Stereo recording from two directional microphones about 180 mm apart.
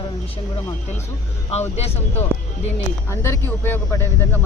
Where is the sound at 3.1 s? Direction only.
15° left (ahead or behind).